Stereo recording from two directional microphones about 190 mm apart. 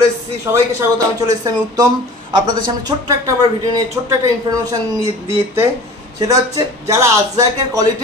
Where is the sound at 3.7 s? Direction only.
15° right (ahead or behind).